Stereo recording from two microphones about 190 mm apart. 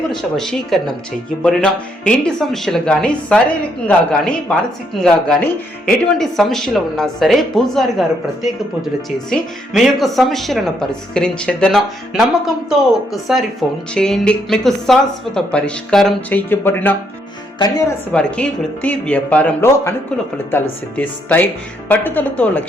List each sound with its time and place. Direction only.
0.1 s a woman's voice: centre (ahead or behind)
5.8 s a woman's voice: centre (ahead or behind); by 17.9 s 20° left (ahead or behind)
18.1 s speech: 5° left (ahead or behind)